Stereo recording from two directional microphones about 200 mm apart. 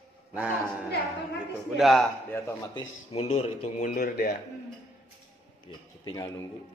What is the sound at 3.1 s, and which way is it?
Speech, 30° left (ahead or behind).